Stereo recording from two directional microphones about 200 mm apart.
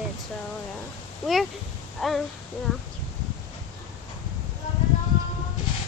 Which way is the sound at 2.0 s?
Centre (ahead or behind).